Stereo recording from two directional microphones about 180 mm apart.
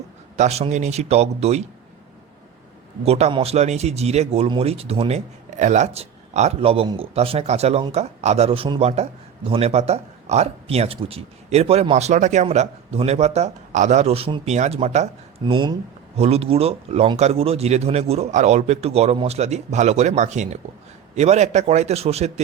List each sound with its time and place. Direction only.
0.3 s speech: 35° right (ahead or behind)
3.0 s speech: 35° right (ahead or behind)